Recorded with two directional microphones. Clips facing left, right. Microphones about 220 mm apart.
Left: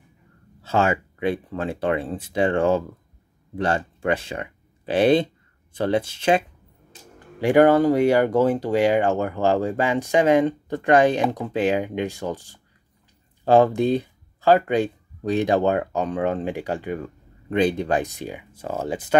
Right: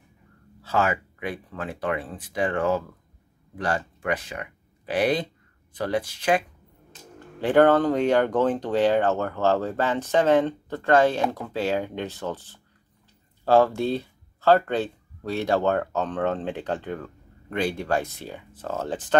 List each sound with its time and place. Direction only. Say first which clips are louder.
0.6 s speech: left 3 dB; 25° left (ahead or behind)
7.3 s speech: left 2 dB; 10° left (ahead or behind)